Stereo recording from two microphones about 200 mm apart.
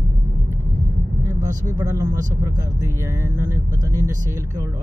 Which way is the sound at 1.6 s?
15° right (ahead or behind).